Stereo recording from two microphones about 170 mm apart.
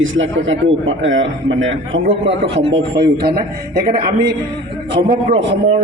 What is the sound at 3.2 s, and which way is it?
Speech, 65° right (ahead or behind).